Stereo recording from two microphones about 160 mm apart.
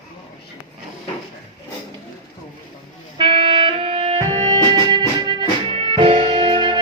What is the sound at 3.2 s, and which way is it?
Music, 30° right (ahead or behind).